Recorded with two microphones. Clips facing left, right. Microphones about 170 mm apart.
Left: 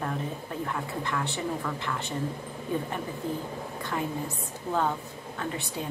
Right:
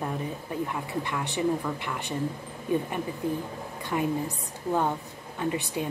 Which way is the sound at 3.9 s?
15° right (ahead or behind).